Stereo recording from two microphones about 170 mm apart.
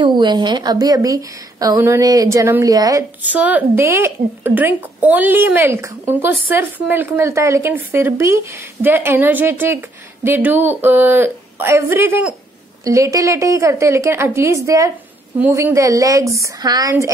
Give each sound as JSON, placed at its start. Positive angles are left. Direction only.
{"t": 0.0, "sound": "a woman's voice", "side_deg": -25}